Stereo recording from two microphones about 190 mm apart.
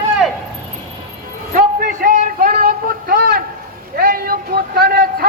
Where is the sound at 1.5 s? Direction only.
45° right (ahead or behind).